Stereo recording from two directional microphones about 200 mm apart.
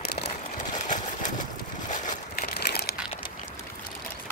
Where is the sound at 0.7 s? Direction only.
40° left (ahead or behind).